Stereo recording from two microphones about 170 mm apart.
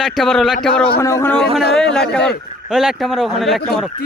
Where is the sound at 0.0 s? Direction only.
Centre (ahead or behind).